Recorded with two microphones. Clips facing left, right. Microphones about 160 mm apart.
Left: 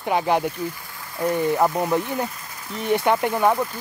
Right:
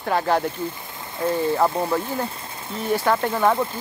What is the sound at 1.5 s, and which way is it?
Speech, 15° left (ahead or behind).